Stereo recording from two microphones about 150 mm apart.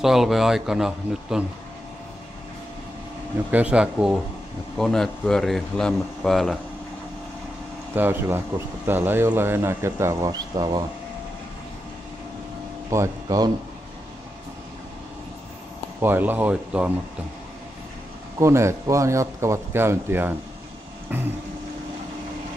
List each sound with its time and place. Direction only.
0.0 s a man's voice: centre (ahead or behind)
3.5 s a man's voice: 10° right (ahead or behind)
7.9 s speech: 15° right (ahead or behind)
12.9 s speech: 20° right (ahead or behind)
16.0 s speech: 15° right (ahead or behind)
18.4 s speech: 20° right (ahead or behind)